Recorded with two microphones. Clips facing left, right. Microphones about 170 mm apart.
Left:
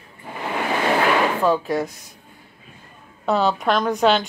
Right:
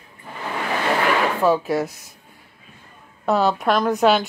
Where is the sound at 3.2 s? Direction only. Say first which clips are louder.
Right 1 dB; centre (ahead or behind).